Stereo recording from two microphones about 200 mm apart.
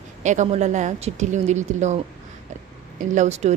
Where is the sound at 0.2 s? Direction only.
35° right (ahead or behind).